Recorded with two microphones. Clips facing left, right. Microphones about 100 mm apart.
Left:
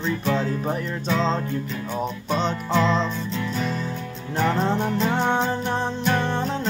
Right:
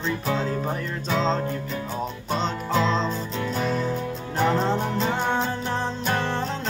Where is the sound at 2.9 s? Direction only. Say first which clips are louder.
Left 1 dB; 30° right (ahead or behind).